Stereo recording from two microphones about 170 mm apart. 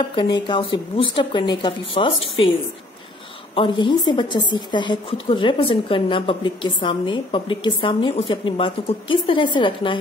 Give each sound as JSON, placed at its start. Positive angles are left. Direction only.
{"t": 0.1, "sound": "a woman's voice", "side_deg": 30}
{"t": 3.5, "sound": "a woman's voice", "side_deg": 30}